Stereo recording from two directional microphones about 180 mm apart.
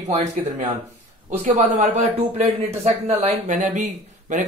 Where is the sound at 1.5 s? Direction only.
40° right (ahead or behind).